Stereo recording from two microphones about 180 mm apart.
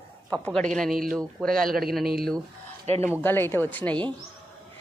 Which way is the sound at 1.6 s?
55° right (ahead or behind).